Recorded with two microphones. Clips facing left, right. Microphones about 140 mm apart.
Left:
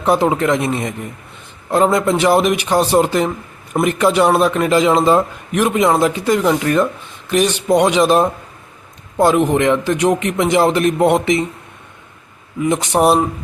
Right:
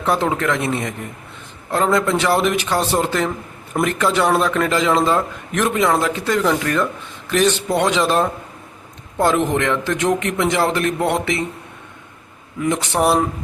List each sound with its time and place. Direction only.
0.0 s speech: 15° left (ahead or behind)
12.6 s speech: 20° left (ahead or behind)